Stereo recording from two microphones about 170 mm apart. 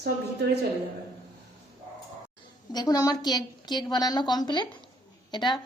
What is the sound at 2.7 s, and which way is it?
A woman's voice, 20° left (ahead or behind).